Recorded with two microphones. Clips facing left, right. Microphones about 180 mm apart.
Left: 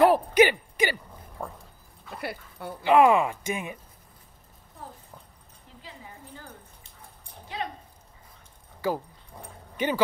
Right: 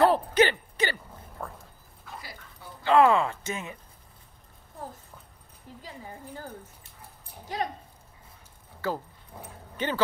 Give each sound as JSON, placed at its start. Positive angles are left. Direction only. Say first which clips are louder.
{"t": 0.0, "sound": "a sound", "louder": "left 3 dB", "side_deg": 10}
{"t": 1.4, "sound": "dog", "louder": "left 2 dB", "side_deg": 10}
{"t": 2.1, "sound": "dog", "louder": "left 10 dB", "side_deg": 65}
{"t": 2.8, "sound": "speech", "louder": "left 1 dB", "side_deg": 15}
{"t": 5.8, "sound": "a sound", "louder": "right 3 dB", "side_deg": -40}
{"t": 7.5, "sound": "dog", "louder": "right 3 dB", "side_deg": -40}
{"t": 8.8, "sound": "speech", "louder": "left 3 dB", "side_deg": 10}
{"t": 9.3, "sound": "dog", "louder": "right 1 dB", "side_deg": -5}
{"t": 9.8, "sound": "speech", "louder": "left 3 dB", "side_deg": 10}